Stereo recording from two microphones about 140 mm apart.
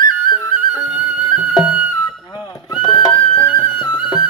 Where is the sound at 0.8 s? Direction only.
10° right (ahead or behind).